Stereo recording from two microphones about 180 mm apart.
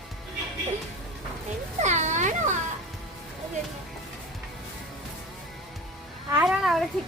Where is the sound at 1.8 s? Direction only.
40° right (ahead or behind).